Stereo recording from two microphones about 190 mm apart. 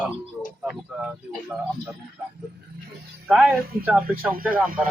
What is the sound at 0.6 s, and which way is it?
Speech, 5° right (ahead or behind).